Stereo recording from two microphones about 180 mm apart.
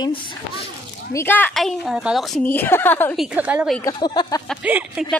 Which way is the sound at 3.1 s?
5° right (ahead or behind).